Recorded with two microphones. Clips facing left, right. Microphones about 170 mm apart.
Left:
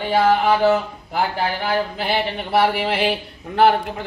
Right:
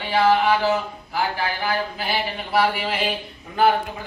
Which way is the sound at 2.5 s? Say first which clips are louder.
Left 3 dB; 65° left (ahead or behind).